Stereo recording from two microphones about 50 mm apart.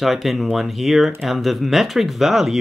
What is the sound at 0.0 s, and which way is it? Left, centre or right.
Speech, centre.